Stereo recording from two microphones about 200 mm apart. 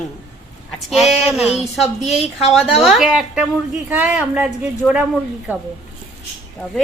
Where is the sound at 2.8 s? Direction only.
Centre (ahead or behind).